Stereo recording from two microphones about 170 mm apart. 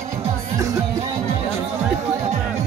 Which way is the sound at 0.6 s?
15° right (ahead or behind).